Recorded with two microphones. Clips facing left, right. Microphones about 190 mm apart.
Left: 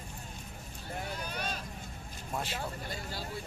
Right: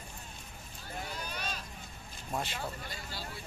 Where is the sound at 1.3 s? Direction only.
55° left (ahead or behind).